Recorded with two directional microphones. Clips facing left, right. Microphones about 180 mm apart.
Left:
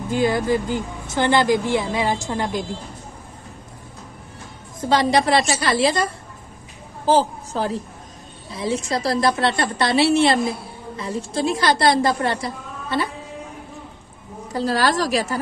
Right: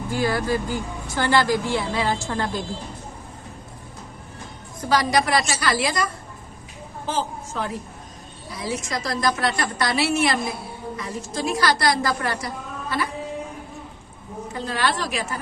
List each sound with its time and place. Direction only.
0.1 s a woman's voice: 20° left (ahead or behind)
4.7 s a woman's voice: 25° left (ahead or behind)
14.5 s a woman's voice: 35° left (ahead or behind)